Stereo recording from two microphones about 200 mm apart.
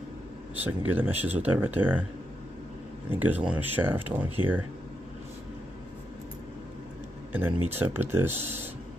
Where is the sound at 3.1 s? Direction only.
10° right (ahead or behind).